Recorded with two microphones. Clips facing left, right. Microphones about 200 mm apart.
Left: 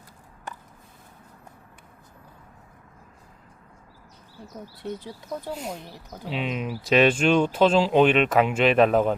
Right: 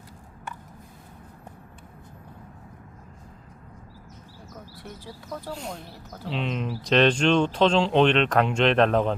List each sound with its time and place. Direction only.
4.8 s speech: 20° left (ahead or behind)
5.5 s speech: 5° left (ahead or behind)